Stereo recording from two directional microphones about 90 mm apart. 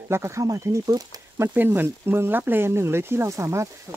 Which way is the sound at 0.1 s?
35° right (ahead or behind).